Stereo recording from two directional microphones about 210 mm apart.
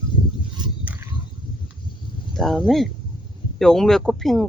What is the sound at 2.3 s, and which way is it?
Speech, centre (ahead or behind).